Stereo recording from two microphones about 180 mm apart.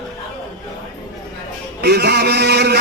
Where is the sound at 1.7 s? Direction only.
65° right (ahead or behind).